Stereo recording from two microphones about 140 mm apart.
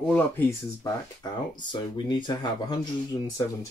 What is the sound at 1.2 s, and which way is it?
Speech, 30° left (ahead or behind).